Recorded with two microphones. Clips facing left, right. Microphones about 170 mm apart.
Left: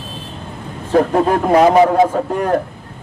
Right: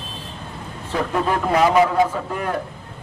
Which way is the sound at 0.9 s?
45° left (ahead or behind).